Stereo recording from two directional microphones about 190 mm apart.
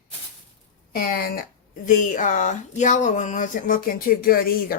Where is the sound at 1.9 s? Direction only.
40° left (ahead or behind).